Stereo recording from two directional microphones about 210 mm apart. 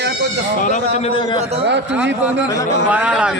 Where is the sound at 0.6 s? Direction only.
35° left (ahead or behind).